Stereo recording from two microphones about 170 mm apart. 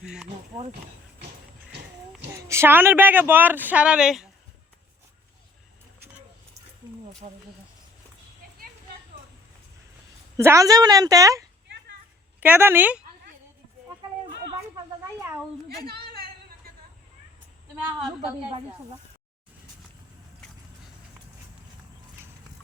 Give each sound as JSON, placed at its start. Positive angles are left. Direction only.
{"t": 0.0, "sound": "speech", "side_deg": -5}
{"t": 2.3, "sound": "speech", "side_deg": -15}
{"t": 7.2, "sound": "speech", "side_deg": -45}
{"t": 10.3, "sound": "a woman's voice", "side_deg": -20}
{"t": 15.9, "sound": "a sound", "side_deg": -65}